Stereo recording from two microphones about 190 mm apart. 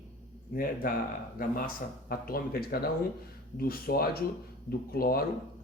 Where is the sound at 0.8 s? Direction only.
45° left (ahead or behind).